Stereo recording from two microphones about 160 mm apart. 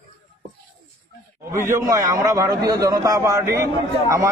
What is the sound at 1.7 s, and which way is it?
A man's voice, 20° right (ahead or behind).